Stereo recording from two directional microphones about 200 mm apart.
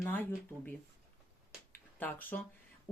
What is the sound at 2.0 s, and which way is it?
Speech, 10° left (ahead or behind).